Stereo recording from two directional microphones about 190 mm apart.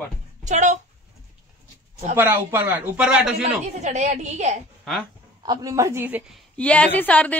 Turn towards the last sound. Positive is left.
turn(degrees=10)  # may be behind; listen again after turning